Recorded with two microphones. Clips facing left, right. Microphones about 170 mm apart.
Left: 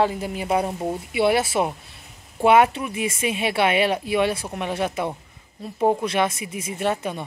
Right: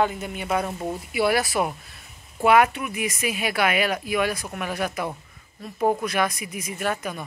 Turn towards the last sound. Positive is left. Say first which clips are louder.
# left 3 dB
turn(degrees=25)  # may be behind; listen again after turning